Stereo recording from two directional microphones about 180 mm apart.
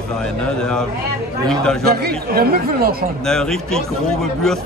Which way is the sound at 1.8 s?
60° right (ahead or behind).